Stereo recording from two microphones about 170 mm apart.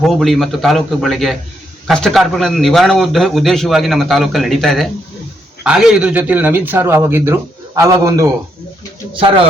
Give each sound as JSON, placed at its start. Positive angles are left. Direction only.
{"t": 0.0, "sound": "a man's voice", "side_deg": 0}